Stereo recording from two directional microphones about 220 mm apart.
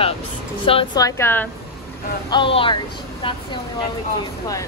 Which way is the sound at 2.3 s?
25° left (ahead or behind).